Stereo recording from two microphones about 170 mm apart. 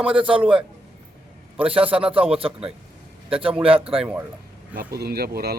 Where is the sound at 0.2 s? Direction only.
30° right (ahead or behind).